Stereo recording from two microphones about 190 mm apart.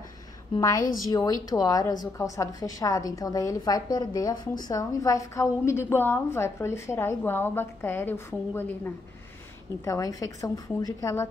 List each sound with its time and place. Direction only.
1.1 s a woman's voice: 20° left (ahead or behind)